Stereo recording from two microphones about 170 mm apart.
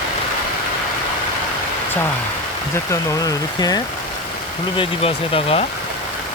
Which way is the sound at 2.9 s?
20° left (ahead or behind).